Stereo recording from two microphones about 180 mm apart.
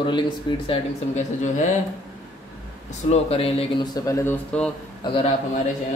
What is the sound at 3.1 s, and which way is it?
A man's voice, 30° left (ahead or behind).